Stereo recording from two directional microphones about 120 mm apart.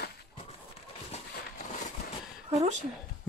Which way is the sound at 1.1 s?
65° left (ahead or behind).